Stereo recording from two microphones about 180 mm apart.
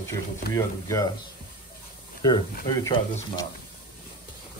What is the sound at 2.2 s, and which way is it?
Speech, 25° left (ahead or behind).